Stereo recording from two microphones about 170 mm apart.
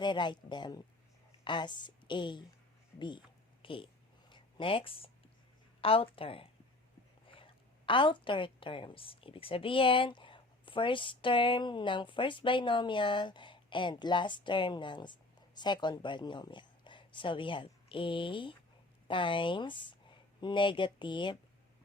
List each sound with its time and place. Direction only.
0.0 s a woman's voice: 25° left (ahead or behind)
3.6 s speech: 30° left (ahead or behind)
4.3 s a sound: 25° left (ahead or behind)
5.8 s a woman's voice: 35° left (ahead or behind)